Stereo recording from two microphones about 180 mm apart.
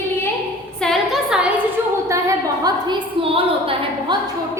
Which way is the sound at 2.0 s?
20° right (ahead or behind).